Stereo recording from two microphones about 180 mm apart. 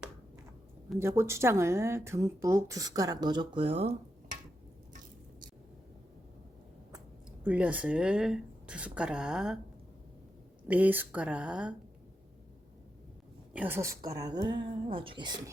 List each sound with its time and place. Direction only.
0.9 s speech: 15° right (ahead or behind); by 3.9 s 35° right (ahead or behind)
7.4 s a woman's voice: 10° right (ahead or behind)
10.7 s speech: 10° right (ahead or behind)
13.5 s speech: 10° right (ahead or behind); by 15.4 s 25° right (ahead or behind)